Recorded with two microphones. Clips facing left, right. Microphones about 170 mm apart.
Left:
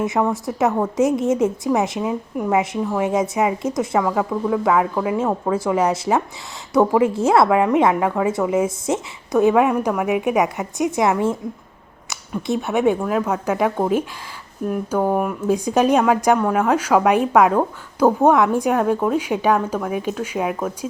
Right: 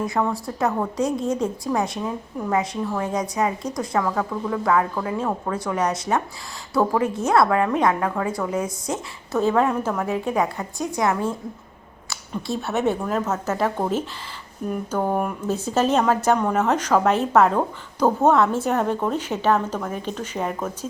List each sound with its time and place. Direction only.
0.0 s a woman's voice: 20° left (ahead or behind)
12.5 s a woman's voice: 15° left (ahead or behind)